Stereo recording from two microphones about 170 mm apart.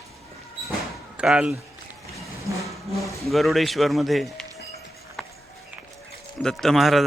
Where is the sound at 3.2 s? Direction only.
Centre (ahead or behind).